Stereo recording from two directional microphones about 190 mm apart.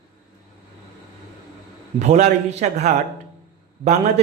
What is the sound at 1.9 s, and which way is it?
Speech, 35° right (ahead or behind).